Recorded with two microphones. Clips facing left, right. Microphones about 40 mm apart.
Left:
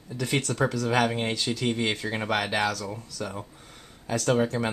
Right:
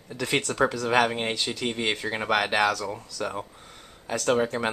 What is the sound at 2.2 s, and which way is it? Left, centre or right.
Speech, right.